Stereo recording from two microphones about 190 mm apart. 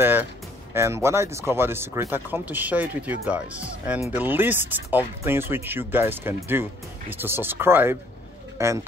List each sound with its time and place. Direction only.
0.7 s speech: 15° right (ahead or behind)